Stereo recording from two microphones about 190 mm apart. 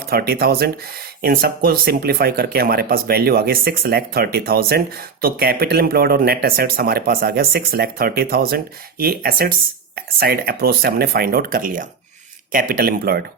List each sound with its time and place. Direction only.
0.1 s speech: 55° right (ahead or behind)